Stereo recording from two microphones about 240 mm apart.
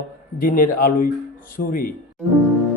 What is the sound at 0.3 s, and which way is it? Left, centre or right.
Speech, left.